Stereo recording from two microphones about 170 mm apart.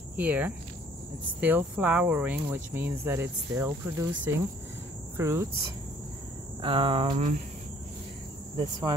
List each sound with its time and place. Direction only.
0.1 s speech: 10° right (ahead or behind)
6.6 s cricket: 30° right (ahead or behind)